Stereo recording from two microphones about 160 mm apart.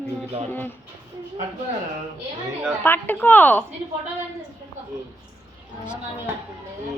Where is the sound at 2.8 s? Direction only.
10° left (ahead or behind).